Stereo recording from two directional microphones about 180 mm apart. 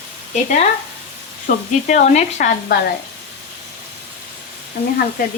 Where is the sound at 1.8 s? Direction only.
40° left (ahead or behind).